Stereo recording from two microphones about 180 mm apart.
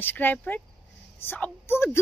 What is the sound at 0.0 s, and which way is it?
A woman's voice, 10° left (ahead or behind).